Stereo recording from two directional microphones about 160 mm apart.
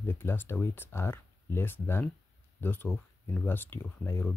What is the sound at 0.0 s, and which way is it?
Speech, 15° left (ahead or behind).